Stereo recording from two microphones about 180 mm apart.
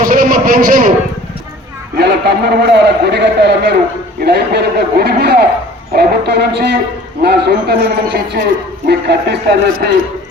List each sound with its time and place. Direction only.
0.0 s a man's voice: 50° right (ahead or behind)
2.0 s a man's voice: 65° right (ahead or behind)
8.9 s a man's voice: 65° right (ahead or behind)